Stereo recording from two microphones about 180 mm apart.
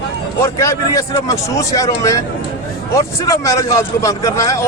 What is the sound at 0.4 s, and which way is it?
A man's voice, 15° left (ahead or behind).